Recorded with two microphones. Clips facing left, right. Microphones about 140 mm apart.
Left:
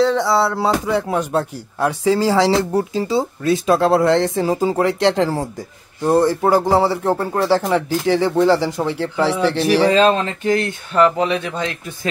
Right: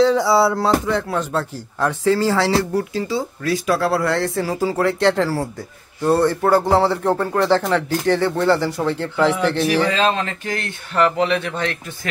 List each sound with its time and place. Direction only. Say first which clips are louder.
0.0 s a sound: right 1 dB; 5° right (ahead or behind)
0.6 s speech: even; 10° left (ahead or behind)
9.8 s speech: left 5 dB; 30° left (ahead or behind)